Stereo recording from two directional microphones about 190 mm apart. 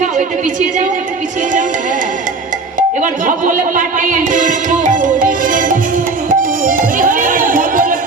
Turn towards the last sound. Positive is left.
turn(degrees=-45)  # may be behind; listen again after turning